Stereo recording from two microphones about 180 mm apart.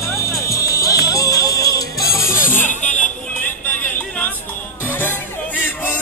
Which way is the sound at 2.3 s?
50° left (ahead or behind).